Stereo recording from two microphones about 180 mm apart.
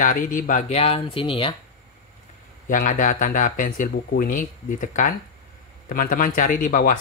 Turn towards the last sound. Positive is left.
turn(degrees=50)  # may be behind; listen again after turning